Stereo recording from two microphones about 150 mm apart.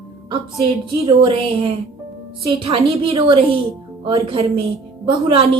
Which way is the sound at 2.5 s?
40° right (ahead or behind).